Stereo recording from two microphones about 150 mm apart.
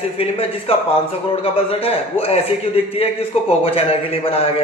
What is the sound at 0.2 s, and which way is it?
A man's voice, 40° left (ahead or behind).